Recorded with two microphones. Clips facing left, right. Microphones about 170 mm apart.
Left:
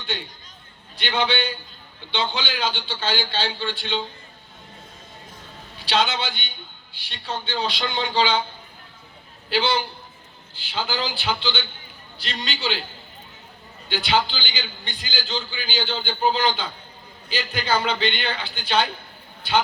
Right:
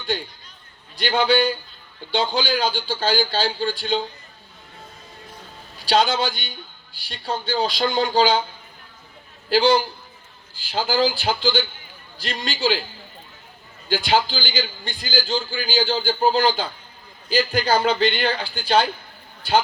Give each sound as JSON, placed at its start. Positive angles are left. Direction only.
{"t": 0.0, "sound": "a man's voice", "side_deg": -40}
{"t": 5.7, "sound": "a man's voice", "side_deg": -40}
{"t": 9.5, "sound": "a man's voice", "side_deg": -40}
{"t": 13.8, "sound": "a man's voice", "side_deg": -40}